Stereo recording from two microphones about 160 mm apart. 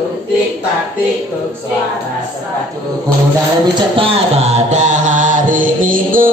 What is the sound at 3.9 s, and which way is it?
Music, 35° right (ahead or behind).